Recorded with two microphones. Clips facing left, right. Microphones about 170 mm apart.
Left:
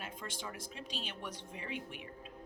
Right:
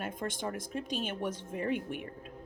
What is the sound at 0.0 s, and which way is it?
Speech, 50° right (ahead or behind).